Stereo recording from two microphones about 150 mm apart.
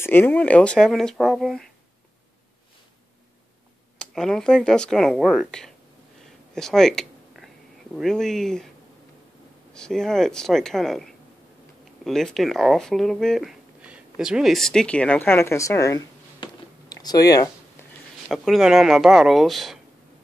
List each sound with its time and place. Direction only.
0.0 s speech: 15° left (ahead or behind)
4.0 s speech: 5° left (ahead or behind)
6.5 s a sound: 5° left (ahead or behind)
9.8 s speech: 5° left (ahead or behind); by 17.5 s 25° left (ahead or behind)
18.3 s speech: centre (ahead or behind)